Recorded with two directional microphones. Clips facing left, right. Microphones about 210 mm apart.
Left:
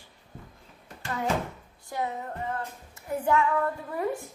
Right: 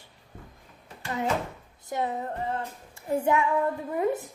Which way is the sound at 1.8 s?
25° right (ahead or behind).